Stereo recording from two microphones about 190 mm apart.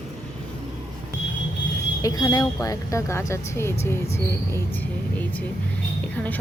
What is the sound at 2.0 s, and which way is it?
Speech, 20° left (ahead or behind).